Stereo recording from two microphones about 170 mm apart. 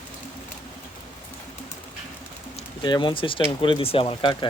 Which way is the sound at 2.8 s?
25° left (ahead or behind).